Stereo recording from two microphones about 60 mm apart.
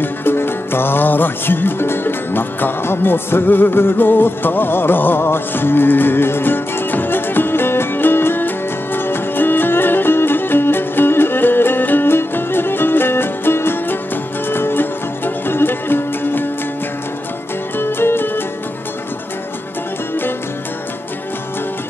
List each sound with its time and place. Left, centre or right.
0.0 s music: left
17.7 s music: left